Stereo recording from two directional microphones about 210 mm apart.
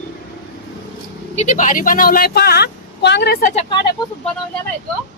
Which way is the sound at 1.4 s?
35° left (ahead or behind).